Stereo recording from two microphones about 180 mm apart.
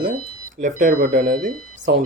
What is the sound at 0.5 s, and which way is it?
Speech, 45° right (ahead or behind).